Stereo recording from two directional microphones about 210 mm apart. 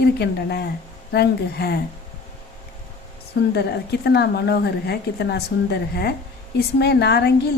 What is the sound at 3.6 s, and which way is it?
A woman's voice, 50° left (ahead or behind).